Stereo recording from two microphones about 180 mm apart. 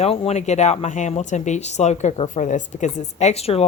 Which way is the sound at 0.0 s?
35° left (ahead or behind).